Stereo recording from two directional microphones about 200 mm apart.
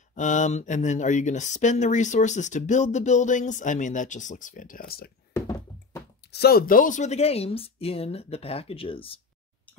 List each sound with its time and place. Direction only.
0.1 s speech: 40° left (ahead or behind)
5.3 s knock: 15° left (ahead or behind)
6.3 s speech: 50° left (ahead or behind); by 9.2 s 25° left (ahead or behind)